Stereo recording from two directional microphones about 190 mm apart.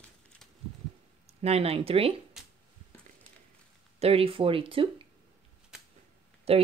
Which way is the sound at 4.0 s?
30° right (ahead or behind).